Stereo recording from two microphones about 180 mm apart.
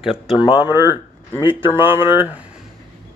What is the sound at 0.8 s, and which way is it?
Speech, 20° left (ahead or behind).